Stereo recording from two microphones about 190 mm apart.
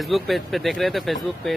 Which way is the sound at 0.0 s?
Centre (ahead or behind).